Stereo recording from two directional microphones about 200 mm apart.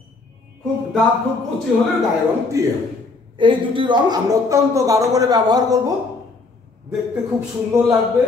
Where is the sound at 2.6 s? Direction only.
15° right (ahead or behind).